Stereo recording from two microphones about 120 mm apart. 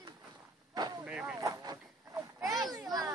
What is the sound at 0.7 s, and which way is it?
Vehicle, 35° right (ahead or behind).